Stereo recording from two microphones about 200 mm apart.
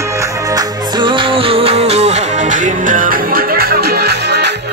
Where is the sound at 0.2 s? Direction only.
20° right (ahead or behind).